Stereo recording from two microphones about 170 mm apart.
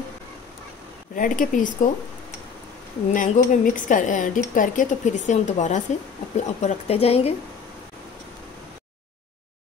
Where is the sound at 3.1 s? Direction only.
50° left (ahead or behind).